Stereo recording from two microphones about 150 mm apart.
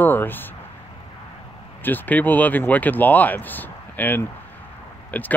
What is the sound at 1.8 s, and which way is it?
Speech, 10° left (ahead or behind).